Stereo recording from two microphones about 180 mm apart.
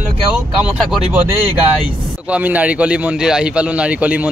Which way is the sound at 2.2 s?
10° right (ahead or behind).